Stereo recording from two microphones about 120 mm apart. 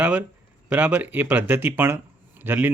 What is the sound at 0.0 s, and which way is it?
Speech, 15° right (ahead or behind).